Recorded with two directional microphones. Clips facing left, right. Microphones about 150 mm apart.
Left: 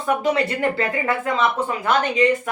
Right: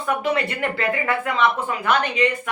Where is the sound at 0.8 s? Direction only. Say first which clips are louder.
Even; 35° left (ahead or behind).